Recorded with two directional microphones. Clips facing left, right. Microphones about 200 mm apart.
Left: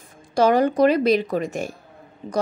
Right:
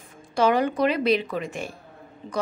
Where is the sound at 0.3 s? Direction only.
40° left (ahead or behind).